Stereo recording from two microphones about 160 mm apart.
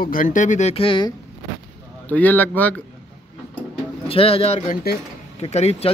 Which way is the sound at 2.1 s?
10° left (ahead or behind).